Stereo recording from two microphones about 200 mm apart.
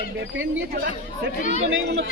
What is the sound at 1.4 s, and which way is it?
Speech, 40° left (ahead or behind).